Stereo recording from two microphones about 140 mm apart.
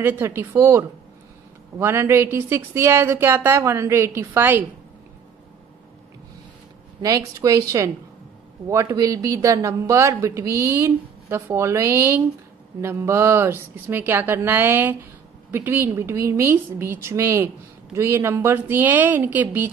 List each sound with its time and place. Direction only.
0.0 s speech: 15° right (ahead or behind)
7.0 s speech: 25° right (ahead or behind)